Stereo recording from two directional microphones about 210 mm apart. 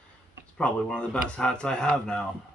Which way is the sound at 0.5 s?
5° left (ahead or behind).